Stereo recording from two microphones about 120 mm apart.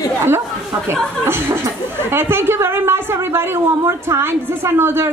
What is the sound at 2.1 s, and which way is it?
A woman's voice, 20° right (ahead or behind).